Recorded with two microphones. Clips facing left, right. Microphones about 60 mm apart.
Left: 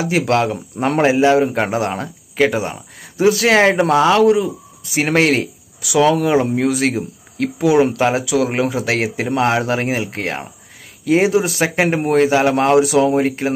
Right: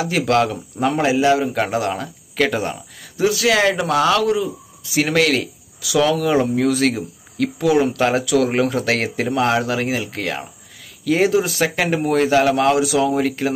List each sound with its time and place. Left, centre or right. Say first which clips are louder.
0.3 s a man's voice: left 1 dB; left
2.3 s speech: left 3 dB; centre
2.7 s speech: right 1 dB; left; by 9.3 s centre
9.3 s a man's voice: left 2 dB; left
12.3 s speech: even; left
12.5 s a man's voice: left 3 dB; left